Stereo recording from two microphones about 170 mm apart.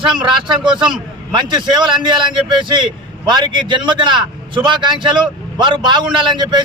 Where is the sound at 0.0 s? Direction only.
30° right (ahead or behind).